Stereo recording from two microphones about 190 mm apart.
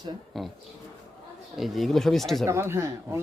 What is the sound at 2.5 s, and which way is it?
Speech, 15° right (ahead or behind).